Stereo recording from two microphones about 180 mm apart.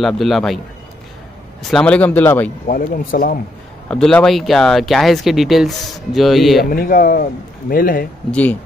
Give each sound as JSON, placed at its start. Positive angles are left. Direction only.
{"t": 0.0, "sound": "speech", "side_deg": 0}
{"t": 1.7, "sound": "speech", "side_deg": 5}
{"t": 2.6, "sound": "speech", "side_deg": 50}
{"t": 3.9, "sound": "speech", "side_deg": 5}
{"t": 6.6, "sound": "speech", "side_deg": 55}
{"t": 8.3, "sound": "speech", "side_deg": 10}